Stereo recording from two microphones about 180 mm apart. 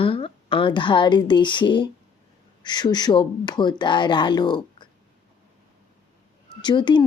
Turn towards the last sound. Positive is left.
turn(degrees=25)  # may be behind; listen again after turning